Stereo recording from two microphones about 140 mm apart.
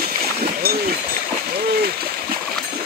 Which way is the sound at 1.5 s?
90° right.